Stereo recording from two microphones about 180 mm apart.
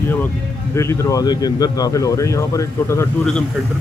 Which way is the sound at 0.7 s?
15° left (ahead or behind).